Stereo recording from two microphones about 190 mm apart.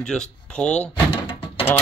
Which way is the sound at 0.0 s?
5° left (ahead or behind).